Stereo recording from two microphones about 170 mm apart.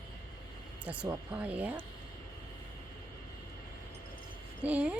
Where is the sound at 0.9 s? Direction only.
5° right (ahead or behind).